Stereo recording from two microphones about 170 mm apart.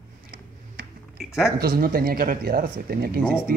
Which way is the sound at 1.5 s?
60° right (ahead or behind).